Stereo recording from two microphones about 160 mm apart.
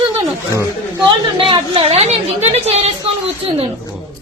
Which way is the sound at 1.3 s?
35° right (ahead or behind).